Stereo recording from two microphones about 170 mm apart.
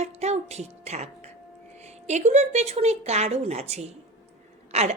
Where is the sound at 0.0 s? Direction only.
40° right (ahead or behind).